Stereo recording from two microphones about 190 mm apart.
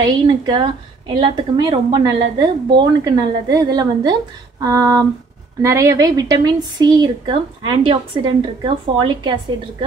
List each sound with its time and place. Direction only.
0.3 s a woman's voice: 25° right (ahead or behind)